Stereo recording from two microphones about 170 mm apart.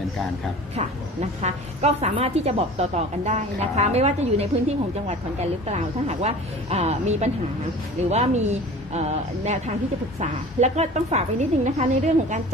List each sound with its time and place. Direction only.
1.4 s a woman's voice: 40° right (ahead or behind)